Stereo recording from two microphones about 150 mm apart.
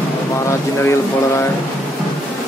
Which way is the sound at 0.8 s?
20° left (ahead or behind).